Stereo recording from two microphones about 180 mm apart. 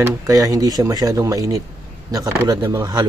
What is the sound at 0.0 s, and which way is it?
Speech, 15° right (ahead or behind).